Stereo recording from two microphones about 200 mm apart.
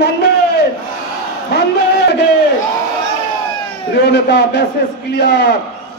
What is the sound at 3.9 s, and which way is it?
Speech, 55° left (ahead or behind).